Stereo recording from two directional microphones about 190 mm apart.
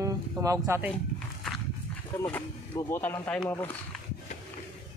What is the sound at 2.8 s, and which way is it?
Speech, 10° left (ahead or behind).